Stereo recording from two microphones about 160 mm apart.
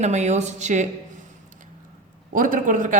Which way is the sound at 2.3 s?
55° right (ahead or behind).